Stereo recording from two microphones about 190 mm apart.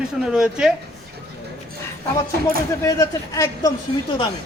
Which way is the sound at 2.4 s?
15° left (ahead or behind).